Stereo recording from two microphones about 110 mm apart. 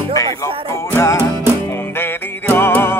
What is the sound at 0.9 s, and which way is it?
Music, 25° left (ahead or behind).